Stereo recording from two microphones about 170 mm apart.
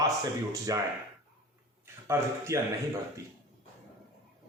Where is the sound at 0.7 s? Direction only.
20° right (ahead or behind).